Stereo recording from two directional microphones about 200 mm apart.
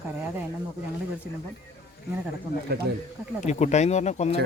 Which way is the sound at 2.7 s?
50° right (ahead or behind).